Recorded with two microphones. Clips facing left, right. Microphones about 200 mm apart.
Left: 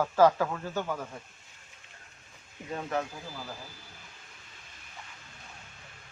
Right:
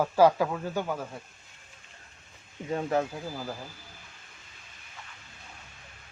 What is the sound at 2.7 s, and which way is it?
Speech, 30° right (ahead or behind).